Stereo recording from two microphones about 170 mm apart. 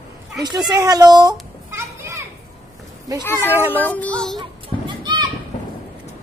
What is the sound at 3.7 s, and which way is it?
Music, 10° left (ahead or behind).